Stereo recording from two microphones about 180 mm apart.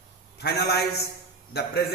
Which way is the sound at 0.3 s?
65° left (ahead or behind).